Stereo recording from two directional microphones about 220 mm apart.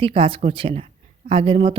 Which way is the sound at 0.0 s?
25° right (ahead or behind).